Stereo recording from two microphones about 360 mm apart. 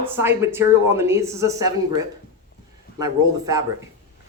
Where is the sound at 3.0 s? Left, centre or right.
Centre.